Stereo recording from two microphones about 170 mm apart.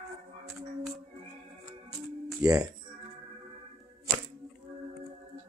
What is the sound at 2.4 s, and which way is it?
Speech, 20° right (ahead or behind).